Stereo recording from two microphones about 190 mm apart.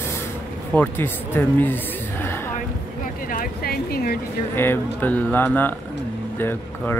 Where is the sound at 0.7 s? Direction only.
10° left (ahead or behind).